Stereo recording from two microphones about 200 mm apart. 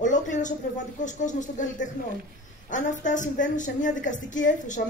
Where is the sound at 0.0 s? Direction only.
40° left (ahead or behind).